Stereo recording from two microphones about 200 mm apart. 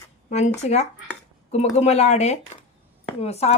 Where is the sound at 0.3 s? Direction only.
35° left (ahead or behind).